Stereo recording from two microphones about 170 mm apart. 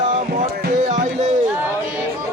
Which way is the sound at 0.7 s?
45° right (ahead or behind).